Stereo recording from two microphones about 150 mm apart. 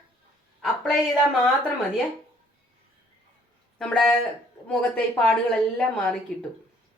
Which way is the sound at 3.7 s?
5° left (ahead or behind).